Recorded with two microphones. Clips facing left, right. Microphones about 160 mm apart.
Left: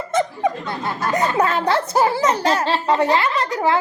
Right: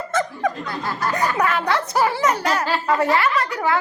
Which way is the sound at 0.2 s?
25° left (ahead or behind).